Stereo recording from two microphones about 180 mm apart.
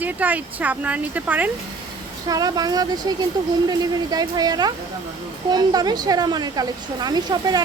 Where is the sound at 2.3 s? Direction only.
20° right (ahead or behind).